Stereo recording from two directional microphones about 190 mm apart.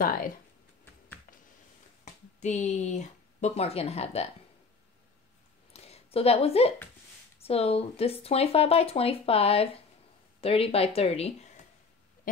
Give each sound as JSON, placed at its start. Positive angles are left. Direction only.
{"t": 2.4, "sound": "speech", "side_deg": 40}
{"t": 5.7, "sound": "a sound", "side_deg": 30}
{"t": 7.3, "sound": "speech", "side_deg": 30}